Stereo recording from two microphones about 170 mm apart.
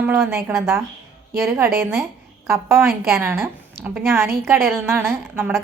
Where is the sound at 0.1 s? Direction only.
15° right (ahead or behind).